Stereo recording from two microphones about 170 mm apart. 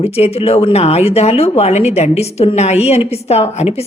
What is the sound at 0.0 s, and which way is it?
Speech, 35° left (ahead or behind).